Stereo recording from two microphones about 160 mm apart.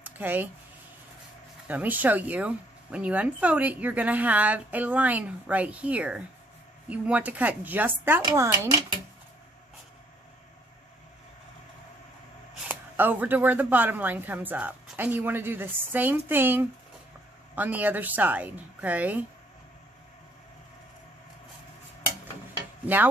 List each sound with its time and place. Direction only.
0.0 s a sound: 10° right (ahead or behind)
1.7 s speech: 10° right (ahead or behind)
12.6 s speech: 10° right (ahead or behind)
22.9 s speech: 10° right (ahead or behind)